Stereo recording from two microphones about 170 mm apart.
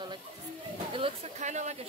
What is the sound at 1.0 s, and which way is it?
Speech, 40° right (ahead or behind).